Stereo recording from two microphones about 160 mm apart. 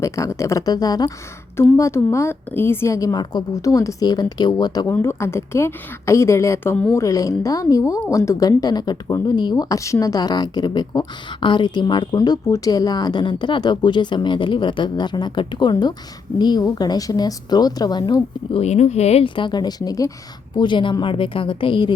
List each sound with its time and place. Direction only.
0.0 s a woman's voice: 20° left (ahead or behind)